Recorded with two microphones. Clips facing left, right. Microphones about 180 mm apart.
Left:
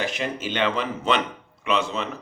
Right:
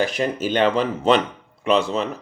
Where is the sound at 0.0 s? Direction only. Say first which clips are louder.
Right 6 dB; 40° right (ahead or behind).